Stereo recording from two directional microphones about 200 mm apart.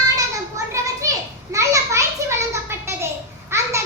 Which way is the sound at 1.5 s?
15° right (ahead or behind).